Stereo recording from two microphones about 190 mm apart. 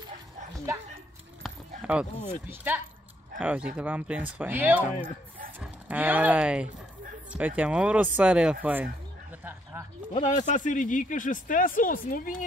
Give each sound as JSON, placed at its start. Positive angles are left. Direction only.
{"t": 1.8, "sound": "speech", "side_deg": -5}
{"t": 9.4, "sound": "a sound", "side_deg": -10}
{"t": 10.1, "sound": "speech", "side_deg": 40}